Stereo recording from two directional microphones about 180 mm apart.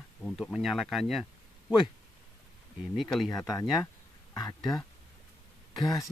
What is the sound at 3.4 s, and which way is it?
Speech, 20° left (ahead or behind).